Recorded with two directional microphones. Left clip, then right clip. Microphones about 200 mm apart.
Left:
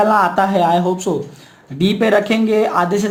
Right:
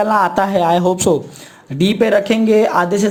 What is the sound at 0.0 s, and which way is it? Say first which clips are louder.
Speech: left 1 dB; 40° right (ahead or behind).